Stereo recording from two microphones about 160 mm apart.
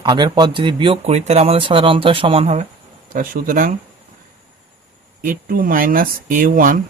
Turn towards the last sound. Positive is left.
turn(degrees=-60)  # may be behind; listen again after turning